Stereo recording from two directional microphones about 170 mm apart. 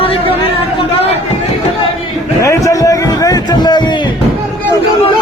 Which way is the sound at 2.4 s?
20° left (ahead or behind).